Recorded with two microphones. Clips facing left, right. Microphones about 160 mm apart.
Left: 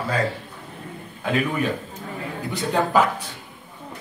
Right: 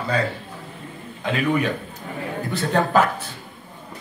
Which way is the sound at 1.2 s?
5° left (ahead or behind).